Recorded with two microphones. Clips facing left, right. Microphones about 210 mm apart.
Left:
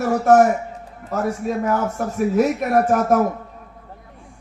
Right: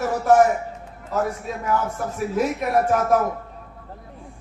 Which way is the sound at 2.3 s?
50° left (ahead or behind).